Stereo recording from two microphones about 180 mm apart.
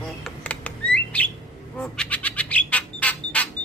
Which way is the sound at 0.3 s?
5° left (ahead or behind).